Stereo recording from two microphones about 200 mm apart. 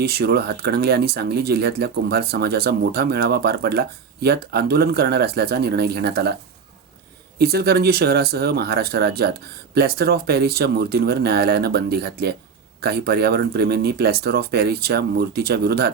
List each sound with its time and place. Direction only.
0.0 s speech: 50° right (ahead or behind)
7.3 s speech: 50° right (ahead or behind)